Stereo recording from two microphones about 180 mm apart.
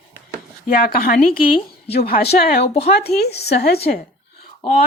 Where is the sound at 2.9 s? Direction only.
60° left (ahead or behind).